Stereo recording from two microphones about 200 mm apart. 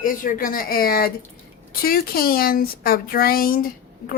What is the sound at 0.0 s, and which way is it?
A woman's voice, 45° left (ahead or behind).